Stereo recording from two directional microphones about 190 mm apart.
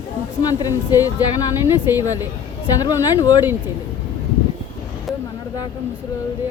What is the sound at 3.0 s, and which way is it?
Speech, 20° left (ahead or behind).